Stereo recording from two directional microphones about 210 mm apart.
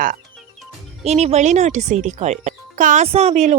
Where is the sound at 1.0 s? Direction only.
30° right (ahead or behind).